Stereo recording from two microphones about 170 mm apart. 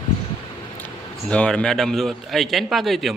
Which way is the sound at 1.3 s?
5° left (ahead or behind).